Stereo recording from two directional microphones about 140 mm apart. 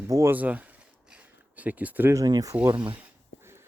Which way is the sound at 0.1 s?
20° right (ahead or behind).